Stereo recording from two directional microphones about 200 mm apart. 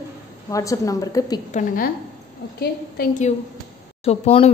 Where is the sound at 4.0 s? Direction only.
30° left (ahead or behind).